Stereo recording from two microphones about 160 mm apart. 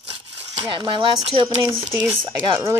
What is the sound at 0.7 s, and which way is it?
Speech, 30° right (ahead or behind).